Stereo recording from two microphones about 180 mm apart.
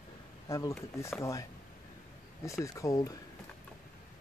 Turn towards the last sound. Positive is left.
turn(degrees=20)  # may be behind; listen again after turning